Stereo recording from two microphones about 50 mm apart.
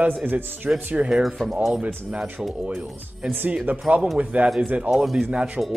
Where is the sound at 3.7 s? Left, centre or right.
Right.